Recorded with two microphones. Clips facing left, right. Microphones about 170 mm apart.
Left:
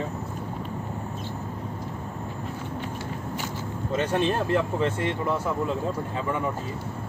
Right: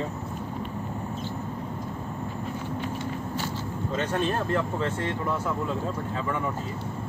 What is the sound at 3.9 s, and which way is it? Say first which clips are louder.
Speech: left 3 dB; 15° left (ahead or behind).